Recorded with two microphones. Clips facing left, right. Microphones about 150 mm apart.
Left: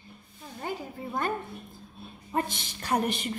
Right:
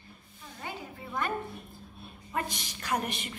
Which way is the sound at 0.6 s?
35° left (ahead or behind).